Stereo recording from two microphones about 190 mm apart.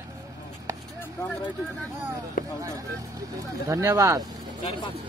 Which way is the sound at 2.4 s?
45° left (ahead or behind).